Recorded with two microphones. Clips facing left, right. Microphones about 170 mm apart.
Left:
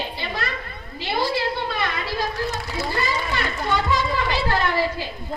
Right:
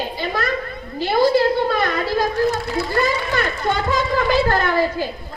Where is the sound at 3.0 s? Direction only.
50° right (ahead or behind).